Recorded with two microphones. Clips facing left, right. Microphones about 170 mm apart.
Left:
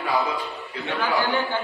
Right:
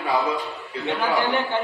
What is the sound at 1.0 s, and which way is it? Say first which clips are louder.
Speech: even; 20° right (ahead or behind).